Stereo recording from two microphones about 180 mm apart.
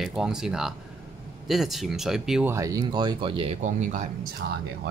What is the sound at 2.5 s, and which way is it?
Speech, 20° right (ahead or behind).